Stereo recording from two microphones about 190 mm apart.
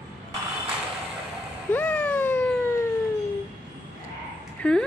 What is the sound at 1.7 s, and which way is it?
Vehicle, 10° left (ahead or behind).